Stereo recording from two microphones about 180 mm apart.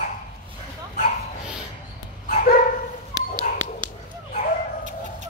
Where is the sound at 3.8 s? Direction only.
25° right (ahead or behind).